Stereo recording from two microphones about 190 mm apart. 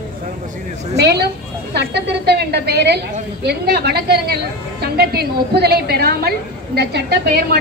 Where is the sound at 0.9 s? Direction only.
60° right (ahead or behind).